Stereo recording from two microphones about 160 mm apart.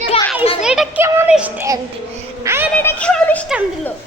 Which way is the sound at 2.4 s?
15° right (ahead or behind).